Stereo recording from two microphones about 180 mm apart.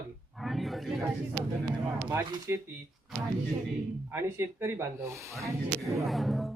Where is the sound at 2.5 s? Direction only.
15° right (ahead or behind).